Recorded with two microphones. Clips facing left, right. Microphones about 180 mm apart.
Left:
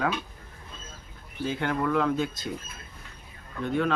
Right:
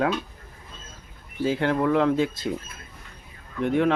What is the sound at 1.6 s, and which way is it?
Speech, 25° right (ahead or behind).